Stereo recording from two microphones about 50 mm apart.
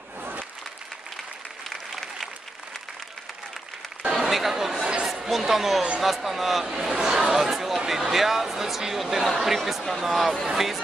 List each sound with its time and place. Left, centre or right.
0.2 s applause: right
4.2 s chatter: centre
5.0 s a woman's voice: centre